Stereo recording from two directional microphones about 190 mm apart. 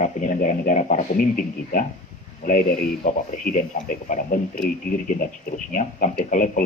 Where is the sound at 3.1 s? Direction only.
40° left (ahead or behind).